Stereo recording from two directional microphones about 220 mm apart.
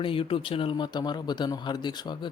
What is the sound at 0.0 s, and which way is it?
Speech, 25° left (ahead or behind).